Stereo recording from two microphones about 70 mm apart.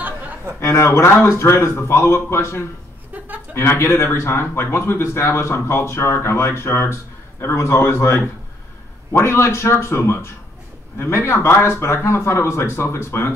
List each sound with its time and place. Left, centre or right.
0.6 s a man's voice: left